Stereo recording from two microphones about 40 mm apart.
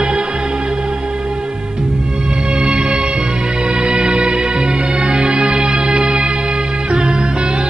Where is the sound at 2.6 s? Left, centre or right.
Right.